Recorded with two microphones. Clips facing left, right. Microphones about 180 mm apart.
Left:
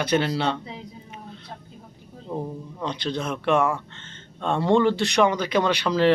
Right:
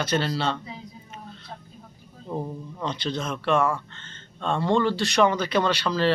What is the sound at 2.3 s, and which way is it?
Speech, centre (ahead or behind).